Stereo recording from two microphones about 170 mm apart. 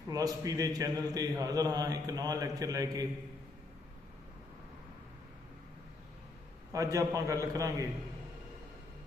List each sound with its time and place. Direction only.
0.1 s a man's voice: 20° right (ahead or behind)
6.7 s a man's voice: 20° right (ahead or behind)